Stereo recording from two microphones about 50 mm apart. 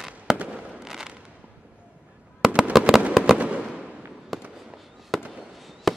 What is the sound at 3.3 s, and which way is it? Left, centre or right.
Fireworks, right.